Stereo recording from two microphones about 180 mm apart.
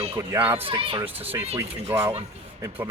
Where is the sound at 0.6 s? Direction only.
30° right (ahead or behind).